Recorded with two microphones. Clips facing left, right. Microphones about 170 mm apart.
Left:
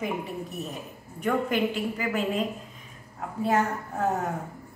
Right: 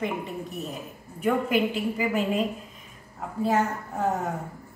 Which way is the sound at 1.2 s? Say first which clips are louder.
Right 2 dB; 10° right (ahead or behind).